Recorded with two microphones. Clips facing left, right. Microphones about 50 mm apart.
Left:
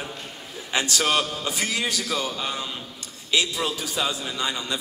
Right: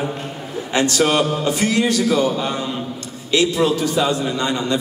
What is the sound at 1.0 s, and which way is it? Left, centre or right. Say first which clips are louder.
Speech: right 6 dB; centre.